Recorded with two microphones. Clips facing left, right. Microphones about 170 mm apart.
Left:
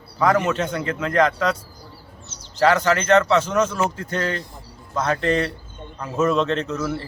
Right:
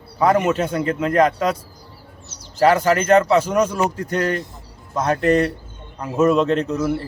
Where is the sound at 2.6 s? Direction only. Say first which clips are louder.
Right 3 dB; 10° right (ahead or behind).